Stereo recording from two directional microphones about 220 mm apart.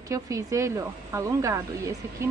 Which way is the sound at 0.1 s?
15° right (ahead or behind).